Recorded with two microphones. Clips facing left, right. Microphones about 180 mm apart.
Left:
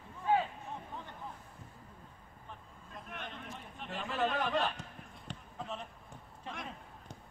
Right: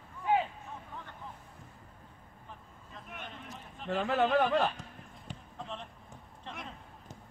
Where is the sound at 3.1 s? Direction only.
Centre (ahead or behind).